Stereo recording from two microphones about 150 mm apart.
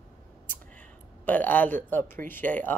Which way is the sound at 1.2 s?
10° left (ahead or behind).